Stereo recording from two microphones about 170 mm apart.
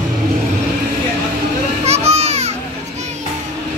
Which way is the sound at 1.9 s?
40° right (ahead or behind).